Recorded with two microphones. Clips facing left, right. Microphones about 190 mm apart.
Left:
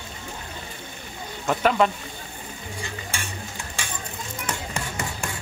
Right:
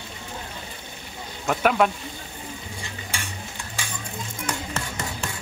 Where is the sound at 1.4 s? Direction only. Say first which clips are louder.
Even; 5° right (ahead or behind).